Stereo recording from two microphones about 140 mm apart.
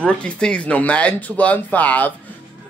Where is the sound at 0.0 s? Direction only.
5° left (ahead or behind).